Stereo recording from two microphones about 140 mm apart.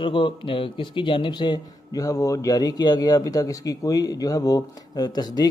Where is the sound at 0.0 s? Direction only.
35° left (ahead or behind).